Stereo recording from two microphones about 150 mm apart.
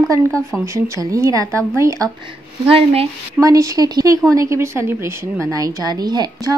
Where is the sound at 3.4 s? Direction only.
20° right (ahead or behind).